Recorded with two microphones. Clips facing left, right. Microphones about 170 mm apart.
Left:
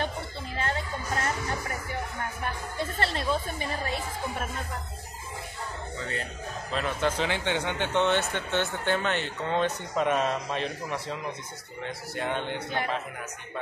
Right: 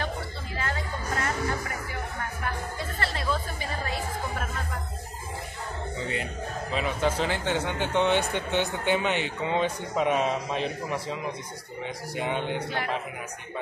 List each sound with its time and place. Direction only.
2.8 s music: 25° left (ahead or behind)
6.7 s speech: 5° right (ahead or behind)